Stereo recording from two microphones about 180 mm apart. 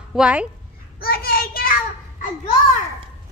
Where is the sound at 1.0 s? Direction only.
55° left (ahead or behind).